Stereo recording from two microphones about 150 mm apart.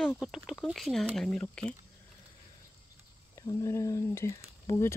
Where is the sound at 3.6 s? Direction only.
20° left (ahead or behind).